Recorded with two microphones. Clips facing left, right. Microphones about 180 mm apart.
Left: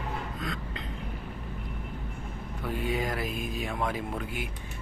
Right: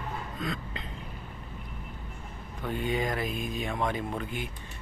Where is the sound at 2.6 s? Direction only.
5° left (ahead or behind).